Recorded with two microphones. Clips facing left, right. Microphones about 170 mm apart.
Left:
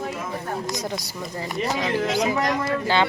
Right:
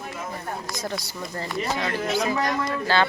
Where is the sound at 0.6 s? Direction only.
15° left (ahead or behind).